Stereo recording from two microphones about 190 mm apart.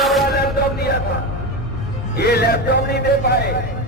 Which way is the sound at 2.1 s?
55° left (ahead or behind).